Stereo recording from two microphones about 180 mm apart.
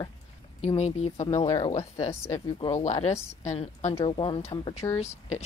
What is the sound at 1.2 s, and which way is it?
Speech, 20° left (ahead or behind).